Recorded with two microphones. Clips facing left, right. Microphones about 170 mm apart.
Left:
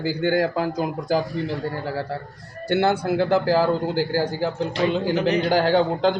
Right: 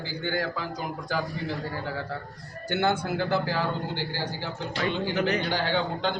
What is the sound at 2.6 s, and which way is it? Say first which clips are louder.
A man's voice: left 6 dB; 35° left (ahead or behind).